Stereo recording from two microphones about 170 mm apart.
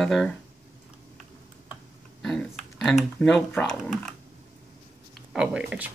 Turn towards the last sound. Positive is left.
turn(degrees=-10)  # may be behind; listen again after turning